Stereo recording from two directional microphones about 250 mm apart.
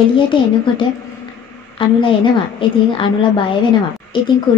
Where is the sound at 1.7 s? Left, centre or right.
Centre.